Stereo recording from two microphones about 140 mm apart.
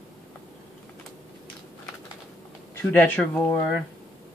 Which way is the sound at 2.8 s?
15° left (ahead or behind).